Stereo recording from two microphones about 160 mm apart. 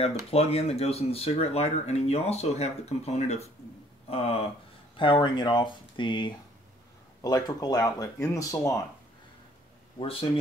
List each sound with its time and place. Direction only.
0.3 s speech: 40° left (ahead or behind); by 8.7 s 20° left (ahead or behind)
9.9 s speech: 35° left (ahead or behind)